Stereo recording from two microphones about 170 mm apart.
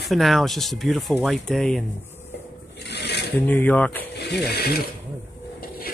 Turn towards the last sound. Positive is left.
turn(degrees=70)  # may be behind; listen again after turning